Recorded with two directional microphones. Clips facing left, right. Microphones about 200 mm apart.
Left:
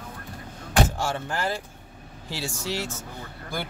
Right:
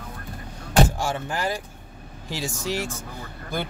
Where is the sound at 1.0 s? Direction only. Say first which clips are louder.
Right 1 dB; 15° right (ahead or behind).